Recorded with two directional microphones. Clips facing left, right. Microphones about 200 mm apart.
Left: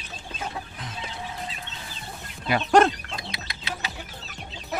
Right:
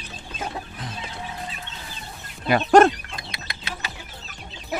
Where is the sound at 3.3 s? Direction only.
50° right (ahead or behind).